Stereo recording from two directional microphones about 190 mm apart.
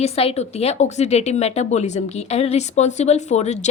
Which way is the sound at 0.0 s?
30° left (ahead or behind).